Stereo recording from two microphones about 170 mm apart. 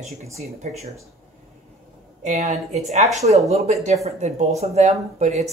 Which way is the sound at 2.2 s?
45° right (ahead or behind).